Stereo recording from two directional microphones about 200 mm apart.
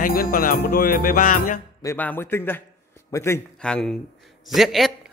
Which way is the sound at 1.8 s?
10° left (ahead or behind).